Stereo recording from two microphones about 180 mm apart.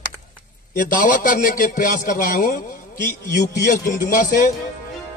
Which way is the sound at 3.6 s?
45° left (ahead or behind).